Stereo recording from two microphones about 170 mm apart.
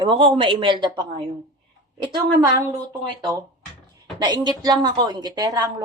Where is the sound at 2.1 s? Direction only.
25° right (ahead or behind).